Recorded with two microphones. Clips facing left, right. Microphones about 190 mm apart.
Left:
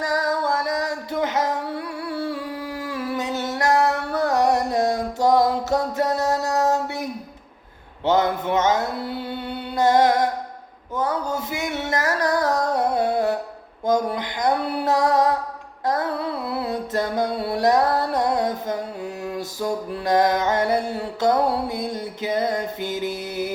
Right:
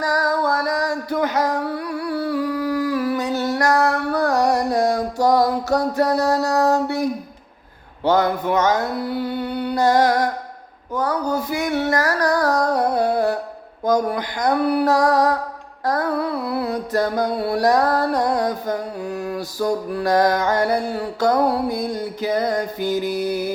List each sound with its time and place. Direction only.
0.0 s music: 20° left (ahead or behind)
8.0 s mantra: 20° left (ahead or behind)
10.9 s a sound: 20° left (ahead or behind)
13.8 s music: 25° left (ahead or behind)
16.5 s music: 25° left (ahead or behind)
22.4 s mantra: 20° left (ahead or behind)